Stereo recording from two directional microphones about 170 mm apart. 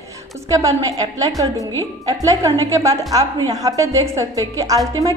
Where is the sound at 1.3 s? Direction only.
20° right (ahead or behind).